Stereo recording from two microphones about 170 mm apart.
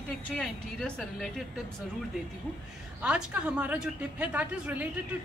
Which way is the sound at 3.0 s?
5° right (ahead or behind).